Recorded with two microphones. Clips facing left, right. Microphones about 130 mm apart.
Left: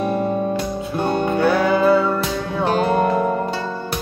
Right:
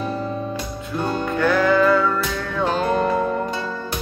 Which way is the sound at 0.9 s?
25° left (ahead or behind).